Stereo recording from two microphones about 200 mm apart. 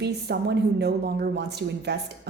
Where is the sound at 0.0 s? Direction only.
55° right (ahead or behind).